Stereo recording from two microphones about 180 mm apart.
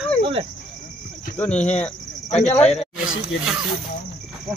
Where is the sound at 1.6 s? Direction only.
40° left (ahead or behind).